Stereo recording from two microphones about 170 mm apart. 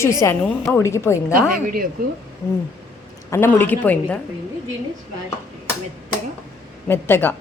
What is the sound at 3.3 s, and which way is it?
Speech, 15° left (ahead or behind).